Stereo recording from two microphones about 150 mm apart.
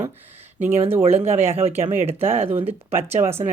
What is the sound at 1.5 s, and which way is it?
Speech, 40° right (ahead or behind).